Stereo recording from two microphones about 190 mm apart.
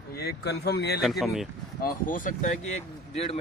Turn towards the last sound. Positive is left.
turn(degrees=30)  # may be behind; listen again after turning